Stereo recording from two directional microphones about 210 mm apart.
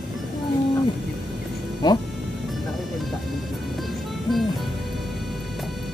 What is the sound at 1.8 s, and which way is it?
Speech, 20° left (ahead or behind).